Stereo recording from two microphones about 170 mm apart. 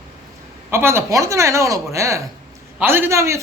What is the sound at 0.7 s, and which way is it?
A woman's voice, 15° right (ahead or behind).